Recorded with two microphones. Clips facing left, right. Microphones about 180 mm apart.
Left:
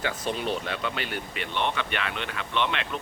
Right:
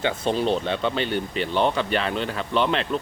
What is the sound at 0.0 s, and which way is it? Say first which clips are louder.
Speech: right 6 dB; 30° right (ahead or behind).